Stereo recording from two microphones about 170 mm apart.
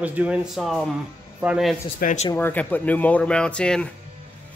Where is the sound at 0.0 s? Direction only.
10° right (ahead or behind).